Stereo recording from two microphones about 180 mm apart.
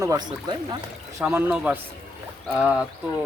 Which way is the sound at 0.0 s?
20° right (ahead or behind).